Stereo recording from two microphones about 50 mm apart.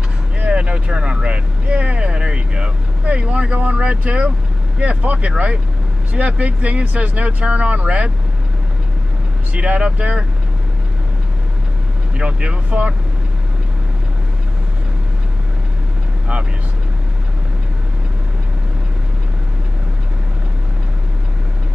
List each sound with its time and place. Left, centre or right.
0.5 s speech: right
9.5 s speech: right
12.2 s speech: right